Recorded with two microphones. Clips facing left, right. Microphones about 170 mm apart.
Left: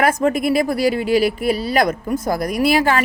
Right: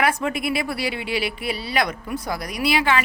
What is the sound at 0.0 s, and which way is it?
Speech, 45° left (ahead or behind).